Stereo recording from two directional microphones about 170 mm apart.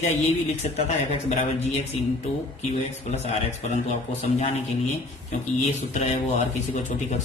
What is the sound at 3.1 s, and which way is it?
Speech, 40° left (ahead or behind).